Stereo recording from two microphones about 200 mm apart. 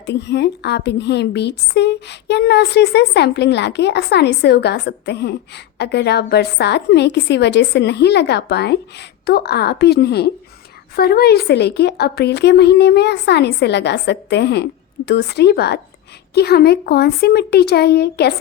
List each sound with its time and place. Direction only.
0.0 s a woman's voice: 60° left (ahead or behind)